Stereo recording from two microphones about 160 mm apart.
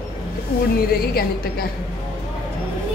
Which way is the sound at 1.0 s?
70° left (ahead or behind).